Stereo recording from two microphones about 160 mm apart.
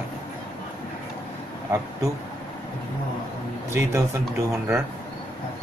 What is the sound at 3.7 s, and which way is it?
Speech, 20° right (ahead or behind).